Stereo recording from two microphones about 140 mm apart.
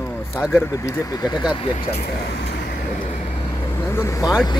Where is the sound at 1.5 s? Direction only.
40° left (ahead or behind).